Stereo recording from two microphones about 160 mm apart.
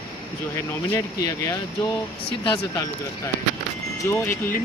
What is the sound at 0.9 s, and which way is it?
Speech, 20° left (ahead or behind).